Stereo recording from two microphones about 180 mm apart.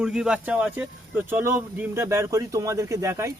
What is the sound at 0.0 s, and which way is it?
A man's voice, 5° right (ahead or behind).